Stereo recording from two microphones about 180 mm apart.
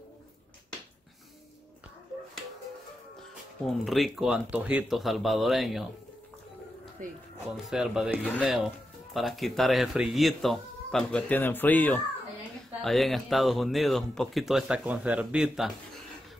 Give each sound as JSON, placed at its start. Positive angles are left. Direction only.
{"t": 3.6, "sound": "speech", "side_deg": 0}
{"t": 7.0, "sound": "speech", "side_deg": -45}
{"t": 7.7, "sound": "speech", "side_deg": -5}